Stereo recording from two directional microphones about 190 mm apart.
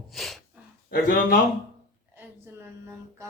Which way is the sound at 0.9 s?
45° left (ahead or behind).